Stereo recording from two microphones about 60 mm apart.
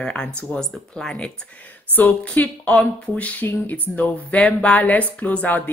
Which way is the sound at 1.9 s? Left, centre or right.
Left.